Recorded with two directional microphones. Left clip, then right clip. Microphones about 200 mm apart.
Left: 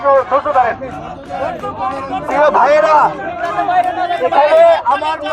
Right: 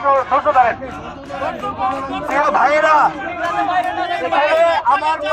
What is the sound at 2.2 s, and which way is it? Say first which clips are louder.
Speech: left 4 dB; 35° left (ahead or behind).